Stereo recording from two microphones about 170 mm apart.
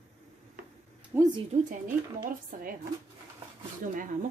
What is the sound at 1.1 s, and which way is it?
Speech, 10° right (ahead or behind).